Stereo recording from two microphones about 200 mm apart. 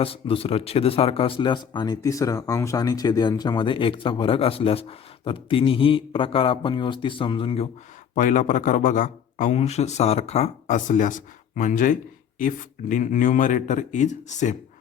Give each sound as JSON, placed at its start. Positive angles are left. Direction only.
{"t": 0.0, "sound": "speech", "side_deg": 30}
{"t": 8.1, "sound": "a man's voice", "side_deg": 40}